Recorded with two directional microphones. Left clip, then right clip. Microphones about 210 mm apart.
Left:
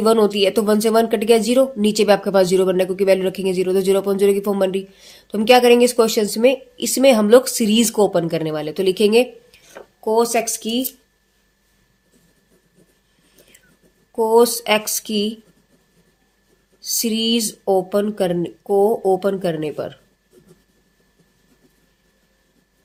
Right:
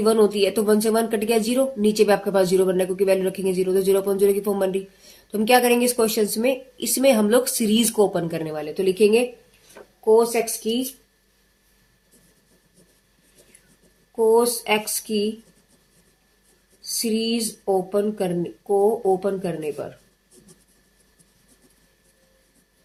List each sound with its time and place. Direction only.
0.0 s a woman's voice: 35° left (ahead or behind)
14.3 s speech: 45° left (ahead or behind)
16.8 s speech: 45° left (ahead or behind)